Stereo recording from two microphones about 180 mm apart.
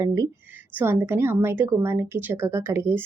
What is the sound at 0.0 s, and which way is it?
A woman's voice, 20° right (ahead or behind).